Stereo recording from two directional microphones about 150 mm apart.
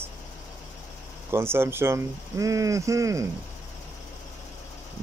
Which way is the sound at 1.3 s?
15° right (ahead or behind).